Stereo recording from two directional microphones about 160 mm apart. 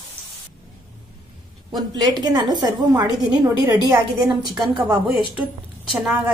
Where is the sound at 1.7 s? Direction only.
25° right (ahead or behind).